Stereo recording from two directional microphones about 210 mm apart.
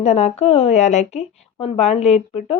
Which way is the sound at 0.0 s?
30° left (ahead or behind).